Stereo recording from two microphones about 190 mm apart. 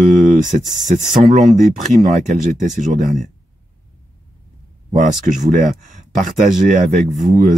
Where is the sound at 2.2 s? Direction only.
40° right (ahead or behind).